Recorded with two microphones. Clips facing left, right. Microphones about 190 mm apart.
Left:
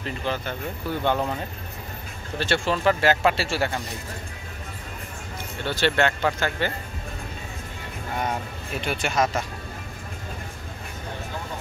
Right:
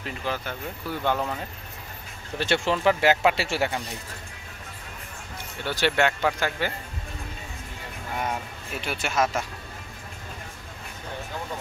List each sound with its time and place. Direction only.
0.0 s speech: 5° right (ahead or behind)
2.3 s speech: 20° right (ahead or behind)
5.7 s speech: 10° right (ahead or behind)
8.8 s speech: 5° right (ahead or behind)